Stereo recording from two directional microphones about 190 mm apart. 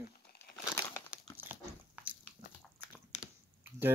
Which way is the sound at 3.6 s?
10° right (ahead or behind).